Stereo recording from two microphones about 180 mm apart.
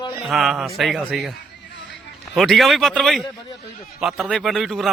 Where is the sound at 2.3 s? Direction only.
Centre (ahead or behind).